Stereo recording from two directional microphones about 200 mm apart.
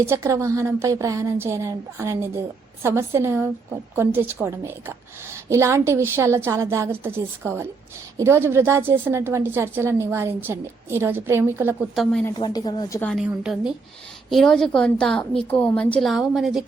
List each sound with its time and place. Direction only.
0.0 s a woman's voice: 15° right (ahead or behind)
12.4 s speech: 20° left (ahead or behind)
13.0 s a woman's voice: 5° left (ahead or behind)